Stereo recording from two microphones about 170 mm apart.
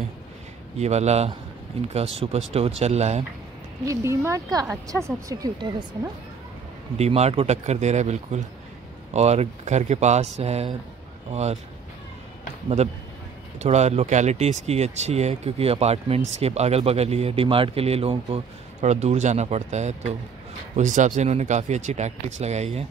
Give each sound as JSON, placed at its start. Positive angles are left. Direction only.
{"t": 0.7, "sound": "speech", "side_deg": -40}
{"t": 3.8, "sound": "speech", "side_deg": -20}
{"t": 7.0, "sound": "speech", "side_deg": -40}
{"t": 12.6, "sound": "speech", "side_deg": -40}